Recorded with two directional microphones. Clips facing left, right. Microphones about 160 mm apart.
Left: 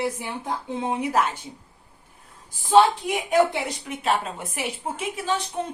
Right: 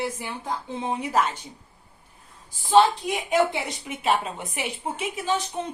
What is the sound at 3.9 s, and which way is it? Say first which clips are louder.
A woman's voice: right 1 dB; 5° right (ahead or behind).